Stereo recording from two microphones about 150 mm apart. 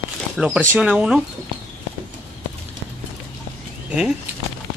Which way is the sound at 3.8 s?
5° right (ahead or behind).